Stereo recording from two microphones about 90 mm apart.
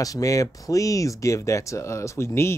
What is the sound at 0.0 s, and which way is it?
Speech, 40° left (ahead or behind).